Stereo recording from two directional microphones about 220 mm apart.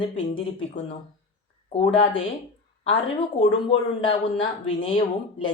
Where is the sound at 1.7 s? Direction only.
25° left (ahead or behind).